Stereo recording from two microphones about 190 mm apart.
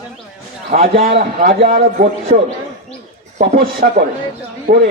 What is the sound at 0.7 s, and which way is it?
A man's voice, 45° right (ahead or behind).